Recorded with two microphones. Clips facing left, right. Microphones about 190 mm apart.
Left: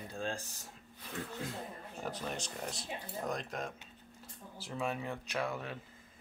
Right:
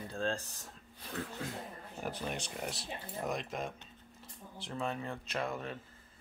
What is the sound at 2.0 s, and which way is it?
Speech, centre (ahead or behind).